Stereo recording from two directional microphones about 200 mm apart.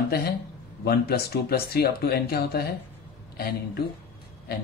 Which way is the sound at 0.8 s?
50° left (ahead or behind).